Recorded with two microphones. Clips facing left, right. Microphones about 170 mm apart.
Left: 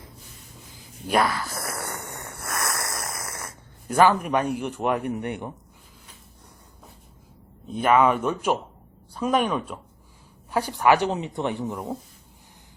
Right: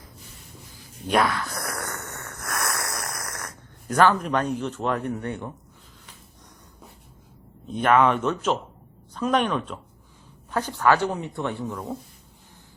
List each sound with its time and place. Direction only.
1.0 s a sound: centre (ahead or behind)
2.5 s snoring: centre (ahead or behind); by 5.5 s 15° left (ahead or behind)
7.7 s speech: 5° left (ahead or behind)